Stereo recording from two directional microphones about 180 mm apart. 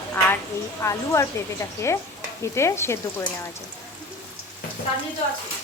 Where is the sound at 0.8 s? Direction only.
15° left (ahead or behind).